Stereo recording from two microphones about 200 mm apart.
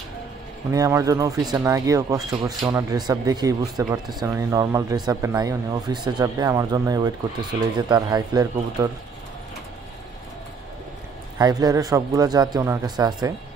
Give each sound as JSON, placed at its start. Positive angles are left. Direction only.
{"t": 0.7, "sound": "speech", "side_deg": -15}
{"t": 11.3, "sound": "speech", "side_deg": -20}